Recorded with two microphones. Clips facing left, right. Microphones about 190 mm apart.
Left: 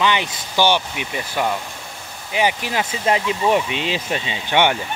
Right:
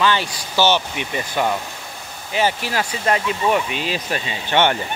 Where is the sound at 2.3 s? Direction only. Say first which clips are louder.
Even; 15° left (ahead or behind).